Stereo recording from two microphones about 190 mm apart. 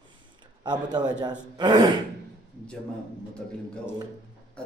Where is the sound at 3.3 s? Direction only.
5° left (ahead or behind).